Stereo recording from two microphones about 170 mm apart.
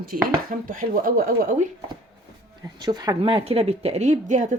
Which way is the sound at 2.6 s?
25° right (ahead or behind).